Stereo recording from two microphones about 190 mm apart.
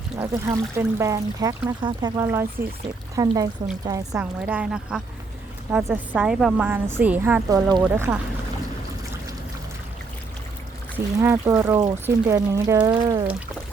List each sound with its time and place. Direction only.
0.2 s speech: 15° right (ahead or behind)
4.4 s a woman's voice: 5° right (ahead or behind)
10.9 s speech: 10° right (ahead or behind)